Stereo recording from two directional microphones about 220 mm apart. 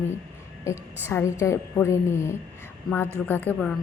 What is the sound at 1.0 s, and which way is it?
A woman's voice, 10° left (ahead or behind).